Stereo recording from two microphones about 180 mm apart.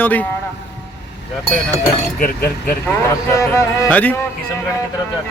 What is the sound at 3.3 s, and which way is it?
Speech, 15° left (ahead or behind).